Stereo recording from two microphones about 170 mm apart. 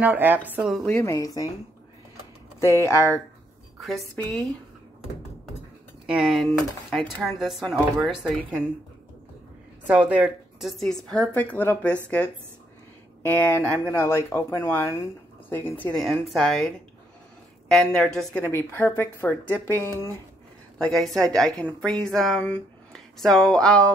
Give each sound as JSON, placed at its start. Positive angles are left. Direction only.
{"t": 0.0, "sound": "speech", "side_deg": -10}
{"t": 0.7, "sound": "speech", "side_deg": 5}
{"t": 1.0, "sound": "speech", "side_deg": 20}
{"t": 2.6, "sound": "speech", "side_deg": 15}
{"t": 3.8, "sound": "speech", "side_deg": 0}
{"t": 6.0, "sound": "speech", "side_deg": -5}
{"t": 9.8, "sound": "speech", "side_deg": -10}
{"t": 13.2, "sound": "speech", "side_deg": 10}
{"t": 17.6, "sound": "speech", "side_deg": 5}
{"t": 18.4, "sound": "speech", "side_deg": 15}
{"t": 20.7, "sound": "a woman's voice", "side_deg": 0}